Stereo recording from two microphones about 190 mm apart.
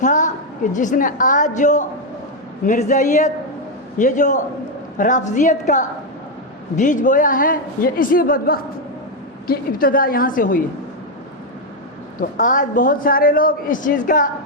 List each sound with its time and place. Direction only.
0.0 s a woman's voice: 40° left (ahead or behind)
12.2 s a woman's voice: 45° left (ahead or behind)